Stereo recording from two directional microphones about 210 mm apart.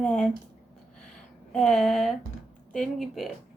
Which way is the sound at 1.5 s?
Centre (ahead or behind).